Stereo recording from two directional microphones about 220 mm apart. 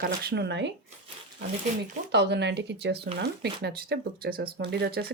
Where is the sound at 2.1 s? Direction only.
50° right (ahead or behind).